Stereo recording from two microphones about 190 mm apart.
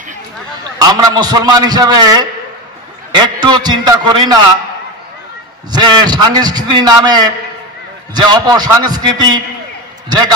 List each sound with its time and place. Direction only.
0.7 s a man's voice: 20° right (ahead or behind)
5.7 s a man's voice: 20° right (ahead or behind)